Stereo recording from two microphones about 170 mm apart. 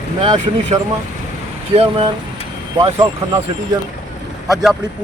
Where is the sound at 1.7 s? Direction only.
35° right (ahead or behind).